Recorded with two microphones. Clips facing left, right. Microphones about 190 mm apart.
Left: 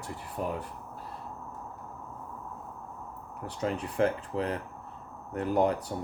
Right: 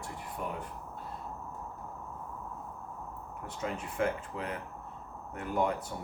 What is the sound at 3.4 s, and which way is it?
Speech, 35° left (ahead or behind).